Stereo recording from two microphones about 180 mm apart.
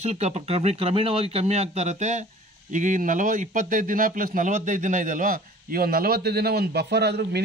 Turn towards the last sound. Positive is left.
turn(degrees=-65)  # may be behind; listen again after turning